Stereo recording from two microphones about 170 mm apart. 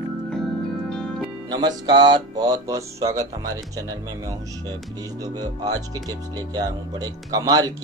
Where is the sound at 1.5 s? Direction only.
25° right (ahead or behind).